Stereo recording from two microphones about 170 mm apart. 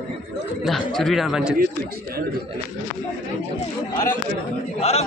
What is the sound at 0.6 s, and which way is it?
Speech, centre (ahead or behind).